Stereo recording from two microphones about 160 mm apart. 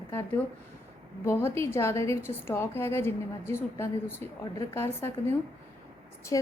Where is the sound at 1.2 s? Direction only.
15° left (ahead or behind).